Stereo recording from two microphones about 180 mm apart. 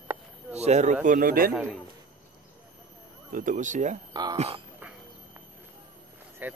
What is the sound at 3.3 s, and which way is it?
Speech, 45° right (ahead or behind).